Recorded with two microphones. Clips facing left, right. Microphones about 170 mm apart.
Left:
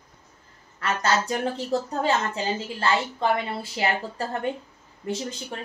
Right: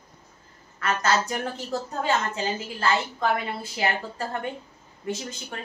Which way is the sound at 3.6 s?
30° left (ahead or behind).